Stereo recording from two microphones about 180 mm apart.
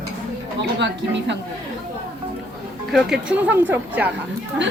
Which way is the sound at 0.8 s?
75° right (ahead or behind).